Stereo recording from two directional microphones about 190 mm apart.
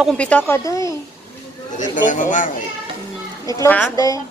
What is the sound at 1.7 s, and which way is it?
Speech, 40° left (ahead or behind).